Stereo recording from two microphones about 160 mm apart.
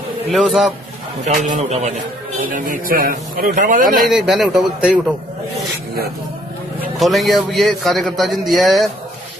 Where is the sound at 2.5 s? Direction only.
60° right (ahead or behind).